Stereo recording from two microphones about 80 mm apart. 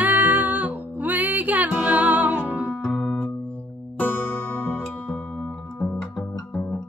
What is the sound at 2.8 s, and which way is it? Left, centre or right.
Music, left.